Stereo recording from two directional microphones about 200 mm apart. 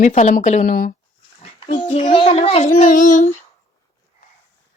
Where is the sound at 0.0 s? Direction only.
35° left (ahead or behind).